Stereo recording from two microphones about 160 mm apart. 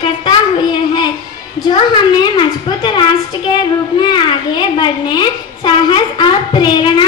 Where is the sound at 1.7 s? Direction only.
30° left (ahead or behind).